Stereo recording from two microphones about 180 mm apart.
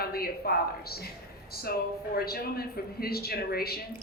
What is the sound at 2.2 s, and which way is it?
A woman's voice, 60° left (ahead or behind).